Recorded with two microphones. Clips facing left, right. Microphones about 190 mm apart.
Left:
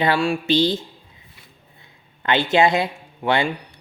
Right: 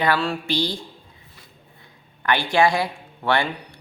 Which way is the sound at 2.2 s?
20° left (ahead or behind).